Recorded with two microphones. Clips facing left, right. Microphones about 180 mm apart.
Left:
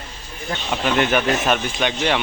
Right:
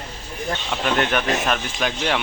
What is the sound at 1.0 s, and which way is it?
Speech, centre (ahead or behind).